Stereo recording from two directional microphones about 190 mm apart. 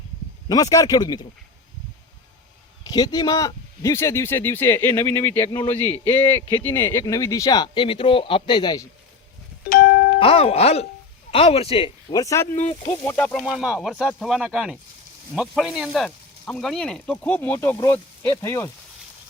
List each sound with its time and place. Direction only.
0.4 s speech: 20° left (ahead or behind)
2.9 s speech: 20° left (ahead or behind)
5.8 s speech: 10° left (ahead or behind)
9.6 s music: 50° left (ahead or behind)
10.2 s speech: 30° left (ahead or behind)
12.2 s speech: 15° left (ahead or behind)